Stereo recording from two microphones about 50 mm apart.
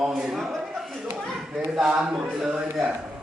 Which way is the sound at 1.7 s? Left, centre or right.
Centre.